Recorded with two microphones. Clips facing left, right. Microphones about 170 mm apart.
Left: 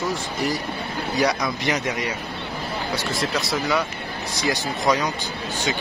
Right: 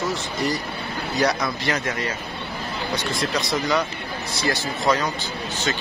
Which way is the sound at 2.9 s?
5° left (ahead or behind).